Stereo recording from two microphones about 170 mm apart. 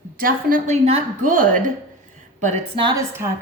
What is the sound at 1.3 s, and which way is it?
A woman's voice, 50° right (ahead or behind).